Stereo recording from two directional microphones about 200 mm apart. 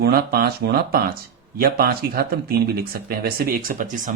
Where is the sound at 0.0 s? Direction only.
50° right (ahead or behind).